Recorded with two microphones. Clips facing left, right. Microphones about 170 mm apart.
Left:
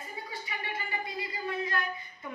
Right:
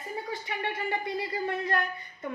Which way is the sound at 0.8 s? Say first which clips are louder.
Right 6 dB; 60° right (ahead or behind).